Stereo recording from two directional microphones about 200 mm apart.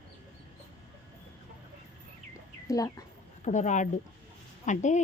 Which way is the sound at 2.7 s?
15° left (ahead or behind).